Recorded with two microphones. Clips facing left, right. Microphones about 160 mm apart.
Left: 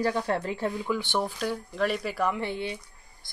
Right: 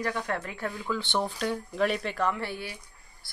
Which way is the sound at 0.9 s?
10° left (ahead or behind).